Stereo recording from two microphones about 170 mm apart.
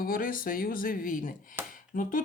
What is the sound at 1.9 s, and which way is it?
Speech, 50° left (ahead or behind).